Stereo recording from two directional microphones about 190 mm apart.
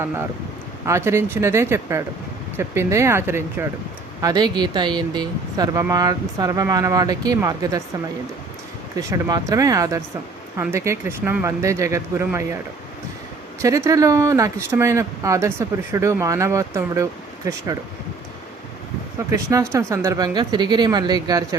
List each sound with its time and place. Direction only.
0.9 s speech: 15° right (ahead or behind)
9.0 s speech: 15° right (ahead or behind)
13.6 s speech: 15° right (ahead or behind)
19.3 s speech: 15° right (ahead or behind)